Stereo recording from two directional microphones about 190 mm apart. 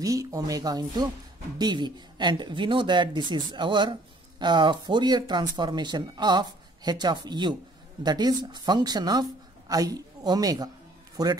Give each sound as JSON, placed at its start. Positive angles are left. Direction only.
{"t": 0.0, "sound": "speech", "side_deg": -15}